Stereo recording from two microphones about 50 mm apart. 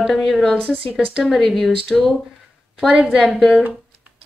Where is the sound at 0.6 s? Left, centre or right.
Right.